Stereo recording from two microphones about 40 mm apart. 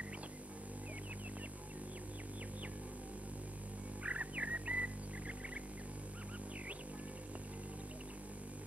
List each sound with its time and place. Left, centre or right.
4.0 s music: right